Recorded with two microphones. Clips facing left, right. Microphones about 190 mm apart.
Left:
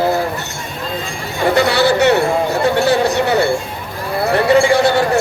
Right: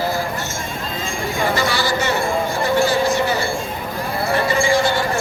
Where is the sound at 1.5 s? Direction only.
65° left (ahead or behind).